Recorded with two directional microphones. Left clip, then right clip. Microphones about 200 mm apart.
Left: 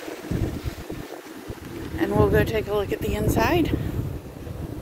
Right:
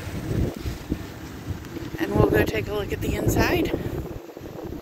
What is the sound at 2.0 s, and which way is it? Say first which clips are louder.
Speech: even; 25° left (ahead or behind).